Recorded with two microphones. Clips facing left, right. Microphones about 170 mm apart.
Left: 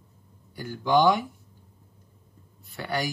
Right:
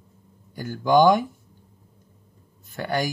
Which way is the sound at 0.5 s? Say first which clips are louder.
Right 4 dB; 45° right (ahead or behind).